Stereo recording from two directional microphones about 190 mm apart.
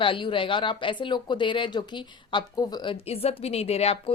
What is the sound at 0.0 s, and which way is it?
A woman's voice, 25° left (ahead or behind).